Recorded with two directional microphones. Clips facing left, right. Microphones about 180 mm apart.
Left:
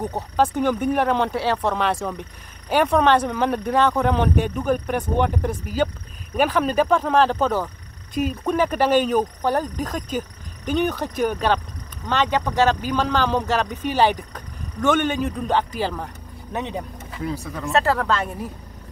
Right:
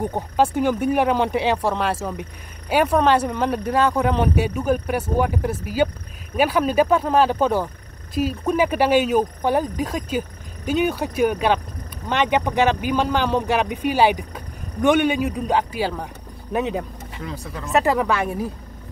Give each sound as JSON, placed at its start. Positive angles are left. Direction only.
{"t": 0.0, "sound": "speech", "side_deg": -10}